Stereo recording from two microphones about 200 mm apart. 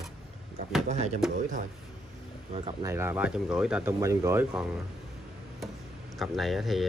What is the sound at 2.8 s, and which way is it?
Speech, 10° right (ahead or behind).